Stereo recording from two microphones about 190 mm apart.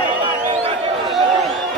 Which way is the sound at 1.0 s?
Centre (ahead or behind).